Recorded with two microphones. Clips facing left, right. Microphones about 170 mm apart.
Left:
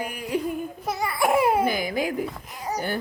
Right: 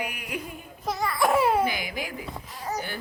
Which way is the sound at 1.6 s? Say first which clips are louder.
Left 5 dB; 45° left (ahead or behind).